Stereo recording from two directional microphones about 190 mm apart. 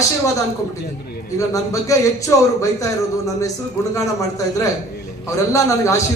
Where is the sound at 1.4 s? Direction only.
15° left (ahead or behind).